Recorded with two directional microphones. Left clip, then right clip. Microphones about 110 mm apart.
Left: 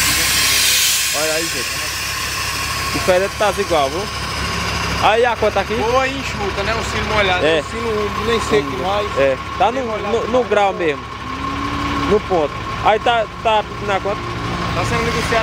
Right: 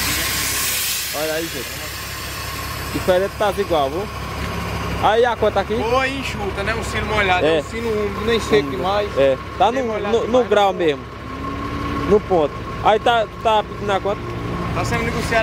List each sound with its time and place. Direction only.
1.1 s vehicle: 45° left (ahead or behind)
3.1 s speech: 15° right (ahead or behind)
5.0 s speech: 15° right (ahead or behind)
8.3 s speech: 35° right (ahead or behind)
9.2 s speech: 25° right (ahead or behind)
12.4 s speech: 25° right (ahead or behind)